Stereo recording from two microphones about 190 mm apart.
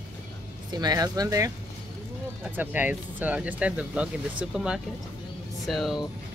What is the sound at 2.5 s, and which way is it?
Speech, 10° right (ahead or behind).